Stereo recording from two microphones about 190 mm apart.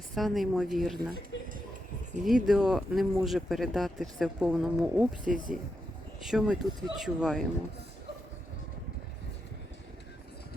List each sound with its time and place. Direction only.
0.1 s speech: centre (ahead or behind)
1.3 s music: 70° left (ahead or behind)
2.2 s speech: centre (ahead or behind)
5.2 s speech: 45° right (ahead or behind)
6.2 s speech: 5° right (ahead or behind)